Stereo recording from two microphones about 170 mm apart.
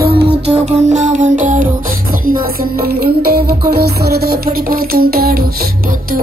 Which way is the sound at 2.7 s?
65° right (ahead or behind).